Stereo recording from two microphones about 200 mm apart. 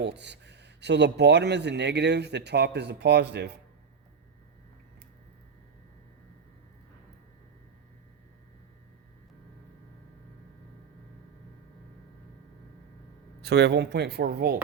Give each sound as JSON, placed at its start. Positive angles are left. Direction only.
{"t": 0.0, "sound": "speech", "side_deg": -60}
{"t": 13.4, "sound": "speech", "side_deg": -60}